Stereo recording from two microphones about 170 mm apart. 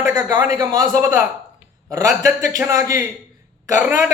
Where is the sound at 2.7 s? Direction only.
20° right (ahead or behind).